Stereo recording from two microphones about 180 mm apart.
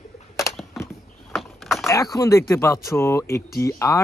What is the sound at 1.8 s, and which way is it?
Speech, 20° left (ahead or behind).